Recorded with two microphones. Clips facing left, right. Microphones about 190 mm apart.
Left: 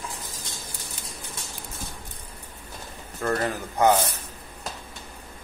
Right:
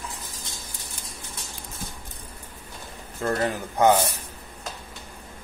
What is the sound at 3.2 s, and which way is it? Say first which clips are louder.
Speech: right 1 dB; 20° right (ahead or behind).